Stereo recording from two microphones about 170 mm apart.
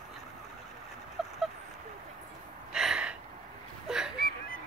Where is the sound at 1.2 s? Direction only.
Centre (ahead or behind).